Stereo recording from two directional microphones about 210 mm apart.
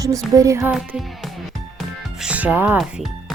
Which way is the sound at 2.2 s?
5° right (ahead or behind).